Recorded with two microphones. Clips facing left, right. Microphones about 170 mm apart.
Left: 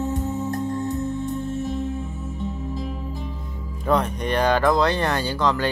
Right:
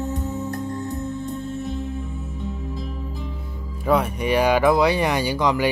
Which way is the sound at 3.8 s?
10° right (ahead or behind).